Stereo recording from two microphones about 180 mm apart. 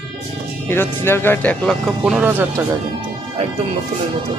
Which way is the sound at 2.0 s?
5° right (ahead or behind).